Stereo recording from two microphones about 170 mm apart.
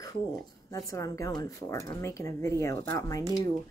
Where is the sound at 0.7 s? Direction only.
20° left (ahead or behind).